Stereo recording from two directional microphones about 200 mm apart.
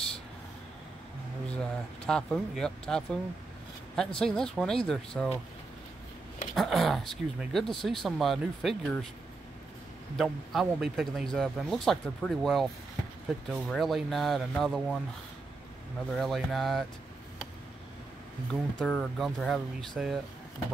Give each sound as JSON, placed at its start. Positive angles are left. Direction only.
{"t": 2.0, "sound": "speech", "side_deg": 5}
{"t": 6.5, "sound": "speech", "side_deg": 0}
{"t": 10.1, "sound": "speech", "side_deg": 0}
{"t": 16.1, "sound": "speech", "side_deg": 0}
{"t": 18.5, "sound": "speech", "side_deg": 5}